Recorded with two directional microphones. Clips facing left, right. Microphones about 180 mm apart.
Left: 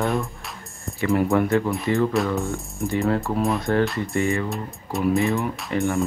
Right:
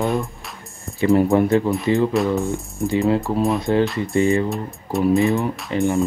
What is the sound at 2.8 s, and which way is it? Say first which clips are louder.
Speech: right 4 dB; 20° right (ahead or behind).